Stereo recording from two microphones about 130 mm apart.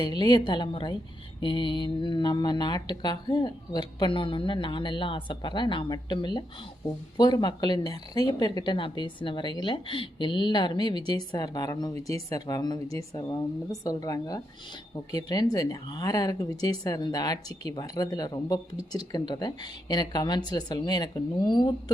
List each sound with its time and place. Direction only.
0.0 s speech: 35° left (ahead or behind)